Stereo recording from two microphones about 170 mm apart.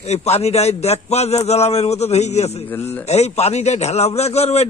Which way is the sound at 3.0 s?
40° left (ahead or behind).